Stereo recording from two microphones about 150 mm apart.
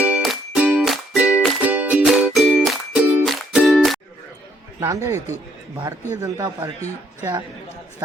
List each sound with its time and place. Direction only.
0.0 s music: 5° right (ahead or behind)
4.8 s a man's voice: 20° right (ahead or behind)